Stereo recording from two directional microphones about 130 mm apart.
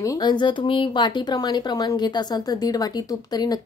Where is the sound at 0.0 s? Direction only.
30° left (ahead or behind).